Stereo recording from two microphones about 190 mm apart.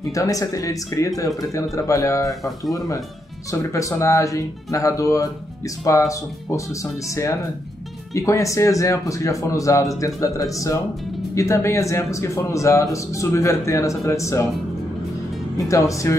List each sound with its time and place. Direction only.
0.1 s a man's voice: 15° left (ahead or behind)
3.5 s a man's voice: 15° left (ahead or behind)
15.5 s a man's voice: 15° left (ahead or behind)